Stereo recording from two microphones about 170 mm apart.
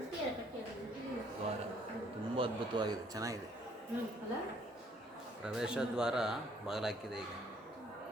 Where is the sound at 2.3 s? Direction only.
30° right (ahead or behind).